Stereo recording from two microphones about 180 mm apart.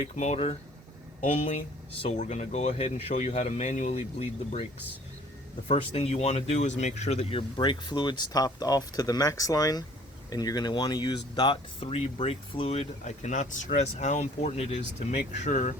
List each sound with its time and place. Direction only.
0.2 s speech: 35° left (ahead or behind)
5.6 s speech: 35° left (ahead or behind)